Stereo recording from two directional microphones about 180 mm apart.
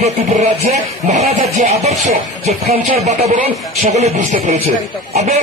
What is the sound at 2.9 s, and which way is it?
Speech, 40° right (ahead or behind).